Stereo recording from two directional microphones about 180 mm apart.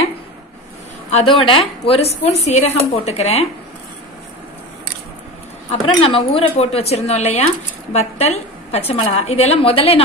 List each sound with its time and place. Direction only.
1.1 s a woman's voice: 30° left (ahead or behind)
5.7 s a woman's voice: 30° left (ahead or behind)